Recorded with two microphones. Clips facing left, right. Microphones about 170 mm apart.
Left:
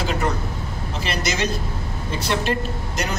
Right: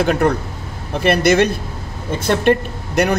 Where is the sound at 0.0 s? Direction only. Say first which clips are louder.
Right 8 dB; 60° right (ahead or behind).